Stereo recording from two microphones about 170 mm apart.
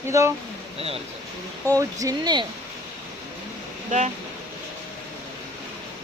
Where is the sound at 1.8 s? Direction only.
20° right (ahead or behind).